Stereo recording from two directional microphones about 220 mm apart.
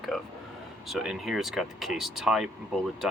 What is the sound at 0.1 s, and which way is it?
Speech, centre (ahead or behind).